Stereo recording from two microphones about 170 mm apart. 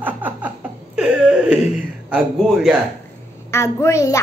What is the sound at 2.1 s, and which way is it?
Speech, centre (ahead or behind).